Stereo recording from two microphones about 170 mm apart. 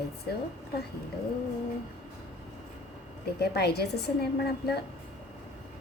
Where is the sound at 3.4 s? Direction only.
70° left (ahead or behind).